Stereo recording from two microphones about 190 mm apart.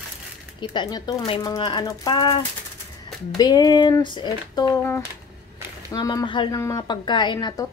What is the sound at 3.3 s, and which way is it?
A woman's voice, 20° left (ahead or behind).